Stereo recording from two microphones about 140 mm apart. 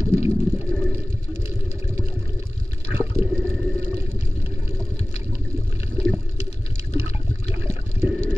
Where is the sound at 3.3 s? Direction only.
5° left (ahead or behind).